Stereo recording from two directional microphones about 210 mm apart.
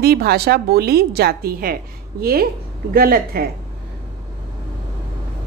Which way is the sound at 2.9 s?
45° right (ahead or behind).